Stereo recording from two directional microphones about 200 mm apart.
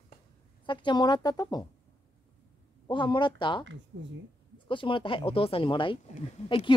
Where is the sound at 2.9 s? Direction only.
25° left (ahead or behind).